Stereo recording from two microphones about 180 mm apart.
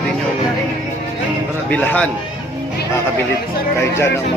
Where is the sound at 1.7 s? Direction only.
10° left (ahead or behind).